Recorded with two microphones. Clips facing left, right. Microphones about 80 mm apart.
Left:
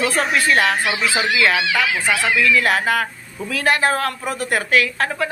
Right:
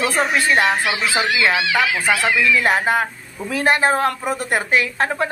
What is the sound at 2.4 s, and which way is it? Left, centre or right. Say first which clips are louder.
A woman's voice: left 1 dB; centre.